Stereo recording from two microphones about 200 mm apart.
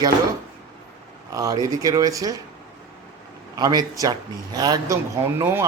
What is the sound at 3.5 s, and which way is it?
Speech, 20° right (ahead or behind).